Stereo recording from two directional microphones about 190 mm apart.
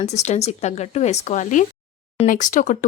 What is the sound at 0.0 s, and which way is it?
Speech, 35° left (ahead or behind).